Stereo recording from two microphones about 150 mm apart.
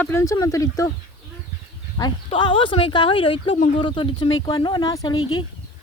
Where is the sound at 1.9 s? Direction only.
30° left (ahead or behind).